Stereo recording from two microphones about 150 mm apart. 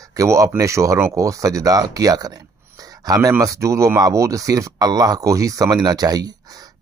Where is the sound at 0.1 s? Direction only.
20° right (ahead or behind).